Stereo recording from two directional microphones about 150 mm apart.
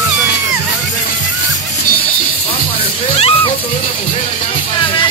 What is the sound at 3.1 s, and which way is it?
Music, 40° left (ahead or behind).